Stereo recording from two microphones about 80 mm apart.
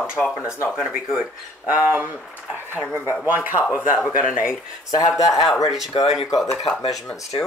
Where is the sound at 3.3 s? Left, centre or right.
Right.